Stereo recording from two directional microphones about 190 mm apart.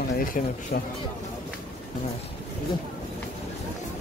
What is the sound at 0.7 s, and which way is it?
Speech, 50° left (ahead or behind).